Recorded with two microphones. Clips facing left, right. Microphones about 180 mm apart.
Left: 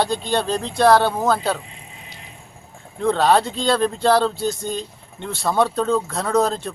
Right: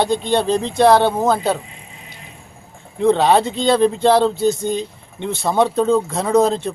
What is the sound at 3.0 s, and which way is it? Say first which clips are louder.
Speech: right 3 dB; 20° right (ahead or behind).